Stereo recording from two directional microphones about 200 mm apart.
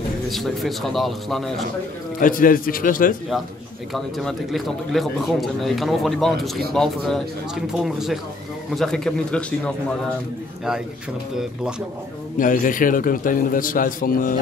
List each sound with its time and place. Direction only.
0.3 s a man's voice: centre (ahead or behind)
2.1 s a man's voice: 45° left (ahead or behind)
3.9 s a man's voice: centre (ahead or behind)
12.4 s a man's voice: 40° left (ahead or behind)